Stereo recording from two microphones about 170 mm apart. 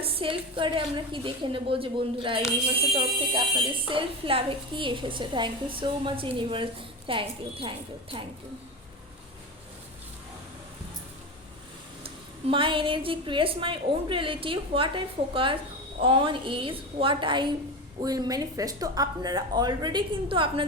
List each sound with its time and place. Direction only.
0.0 s a woman's voice: 30° right (ahead or behind)
12.0 s a woman's voice: 30° right (ahead or behind)